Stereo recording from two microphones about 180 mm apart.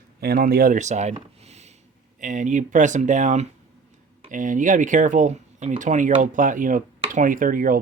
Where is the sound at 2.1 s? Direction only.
45° right (ahead or behind).